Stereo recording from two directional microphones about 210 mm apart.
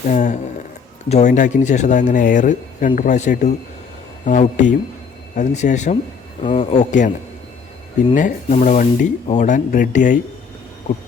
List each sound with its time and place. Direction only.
0.1 s speech: 35° left (ahead or behind)
8.1 s speech: 35° left (ahead or behind)